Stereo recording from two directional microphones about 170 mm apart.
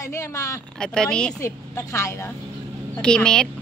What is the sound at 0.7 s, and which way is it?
Speech, 5° left (ahead or behind).